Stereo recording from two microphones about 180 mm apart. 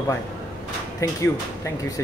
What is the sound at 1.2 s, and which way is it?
Speech, 15° left (ahead or behind).